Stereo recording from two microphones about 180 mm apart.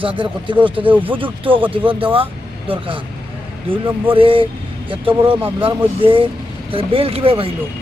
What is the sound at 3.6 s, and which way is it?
Speech, 30° right (ahead or behind).